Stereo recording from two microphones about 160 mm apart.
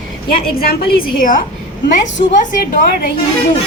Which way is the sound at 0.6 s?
65° left (ahead or behind).